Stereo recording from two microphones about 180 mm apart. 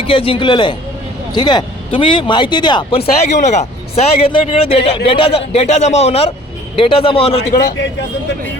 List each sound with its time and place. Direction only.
0.1 s speech: 30° left (ahead or behind)
3.3 s a man's voice: 40° left (ahead or behind)